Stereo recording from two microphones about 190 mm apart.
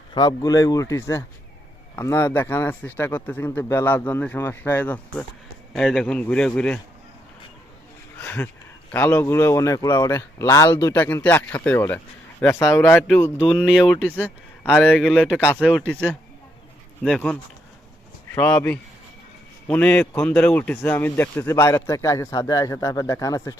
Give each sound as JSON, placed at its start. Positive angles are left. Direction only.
{"t": 0.1, "sound": "a man's voice", "side_deg": 20}
{"t": 8.2, "sound": "a sound", "side_deg": 10}
{"t": 8.9, "sound": "a man's voice", "side_deg": 10}
{"t": 18.3, "sound": "a man's voice", "side_deg": 5}